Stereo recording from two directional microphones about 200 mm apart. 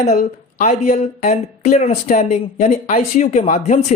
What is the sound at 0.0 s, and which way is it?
A woman's voice, 35° left (ahead or behind).